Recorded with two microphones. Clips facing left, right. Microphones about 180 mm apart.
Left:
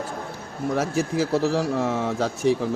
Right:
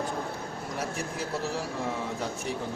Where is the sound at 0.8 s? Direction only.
90° left.